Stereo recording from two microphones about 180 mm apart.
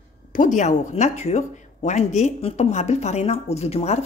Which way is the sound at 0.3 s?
45° left (ahead or behind).